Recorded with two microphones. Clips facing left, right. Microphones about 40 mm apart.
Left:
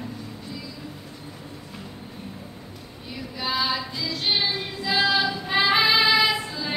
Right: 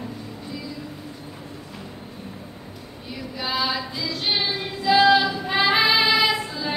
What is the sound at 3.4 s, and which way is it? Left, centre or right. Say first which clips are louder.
Child singing: even; centre.